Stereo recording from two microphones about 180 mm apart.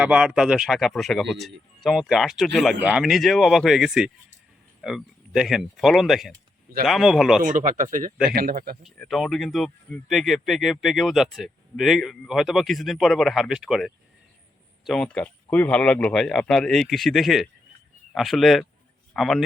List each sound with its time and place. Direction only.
0.0 s speech: 5° right (ahead or behind)
7.4 s speech: 45° right (ahead or behind)
8.8 s speech: centre (ahead or behind)